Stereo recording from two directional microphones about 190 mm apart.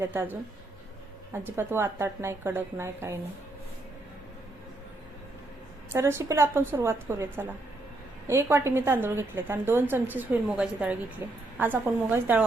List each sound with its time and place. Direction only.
0.0 s a woman's voice: 10° right (ahead or behind)
5.9 s a woman's voice: 15° right (ahead or behind)